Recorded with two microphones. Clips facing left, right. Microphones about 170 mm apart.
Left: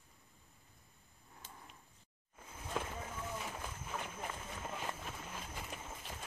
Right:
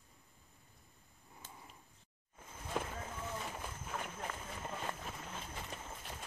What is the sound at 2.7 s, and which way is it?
Run, centre (ahead or behind).